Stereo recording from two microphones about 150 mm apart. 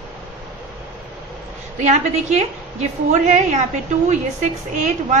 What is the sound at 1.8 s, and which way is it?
A woman's voice, 50° right (ahead or behind).